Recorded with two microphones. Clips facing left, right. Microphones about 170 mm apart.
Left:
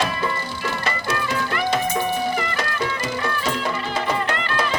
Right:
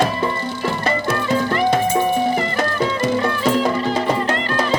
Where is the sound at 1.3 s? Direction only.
35° right (ahead or behind).